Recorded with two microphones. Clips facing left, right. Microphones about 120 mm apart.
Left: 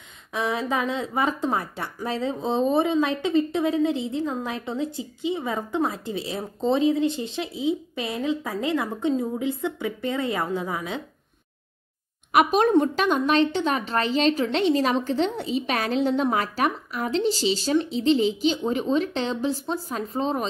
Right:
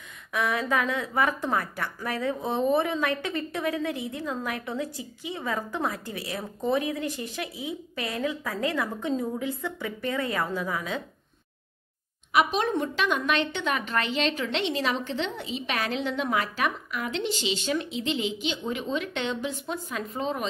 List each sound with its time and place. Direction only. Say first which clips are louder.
0.3 s a woman's voice: left 1 dB; 25° left (ahead or behind)
12.3 s speech: left 5 dB; 45° left (ahead or behind)